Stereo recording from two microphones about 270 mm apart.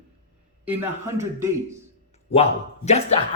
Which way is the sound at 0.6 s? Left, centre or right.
Centre.